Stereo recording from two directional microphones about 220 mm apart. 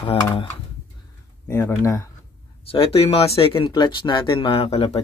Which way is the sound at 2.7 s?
25° left (ahead or behind).